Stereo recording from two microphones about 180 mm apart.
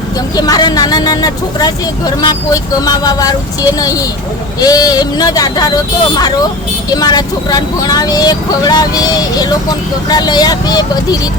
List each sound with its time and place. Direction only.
0.3 s speech: 20° left (ahead or behind)